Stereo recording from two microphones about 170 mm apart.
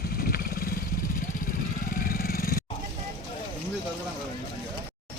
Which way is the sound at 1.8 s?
55° left (ahead or behind).